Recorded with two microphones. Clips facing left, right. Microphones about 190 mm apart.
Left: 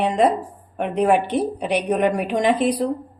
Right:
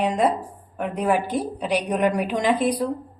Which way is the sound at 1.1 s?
75° left (ahead or behind).